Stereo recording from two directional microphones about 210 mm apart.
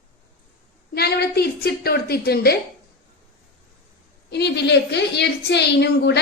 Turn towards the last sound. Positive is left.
turn(degrees=55)  # may be behind; listen again after turning